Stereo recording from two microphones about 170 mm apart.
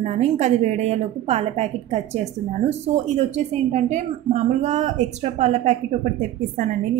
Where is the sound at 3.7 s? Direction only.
40° right (ahead or behind).